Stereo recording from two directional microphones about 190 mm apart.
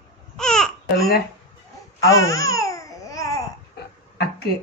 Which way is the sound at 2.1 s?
15° left (ahead or behind).